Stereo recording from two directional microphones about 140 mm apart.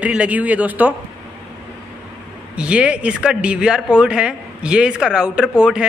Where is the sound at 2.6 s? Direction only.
10° right (ahead or behind).